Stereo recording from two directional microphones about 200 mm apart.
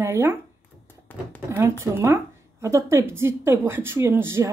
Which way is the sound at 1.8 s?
15° right (ahead or behind).